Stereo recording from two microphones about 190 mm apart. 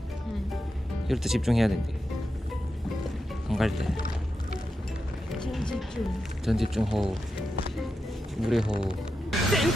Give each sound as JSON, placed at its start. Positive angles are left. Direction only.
{"t": 1.0, "sound": "speech", "side_deg": 0}
{"t": 3.5, "sound": "speech", "side_deg": 0}
{"t": 5.3, "sound": "speech", "side_deg": 0}
{"t": 8.4, "sound": "speech", "side_deg": -5}
{"t": 9.3, "sound": "a sound", "side_deg": 0}